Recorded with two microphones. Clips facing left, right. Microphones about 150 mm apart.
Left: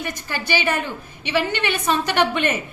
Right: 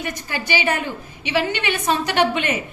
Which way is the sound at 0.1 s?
15° right (ahead or behind).